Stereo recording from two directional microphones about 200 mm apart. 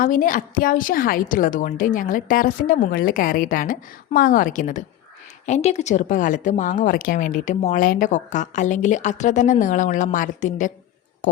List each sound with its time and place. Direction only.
0.0 s a woman's voice: 40° left (ahead or behind)